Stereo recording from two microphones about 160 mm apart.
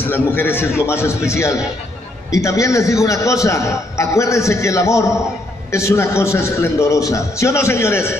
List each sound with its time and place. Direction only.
0.1 s a man's voice: 15° left (ahead or behind)